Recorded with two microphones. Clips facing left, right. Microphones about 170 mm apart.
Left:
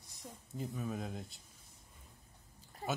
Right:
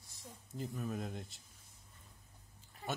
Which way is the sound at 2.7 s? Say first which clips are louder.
Left 4 dB; 40° left (ahead or behind).